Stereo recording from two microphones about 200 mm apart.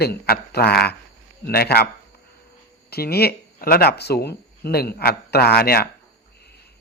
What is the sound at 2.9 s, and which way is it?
Speech, 50° left (ahead or behind).